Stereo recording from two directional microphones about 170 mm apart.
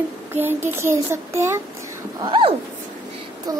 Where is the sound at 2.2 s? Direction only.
30° right (ahead or behind).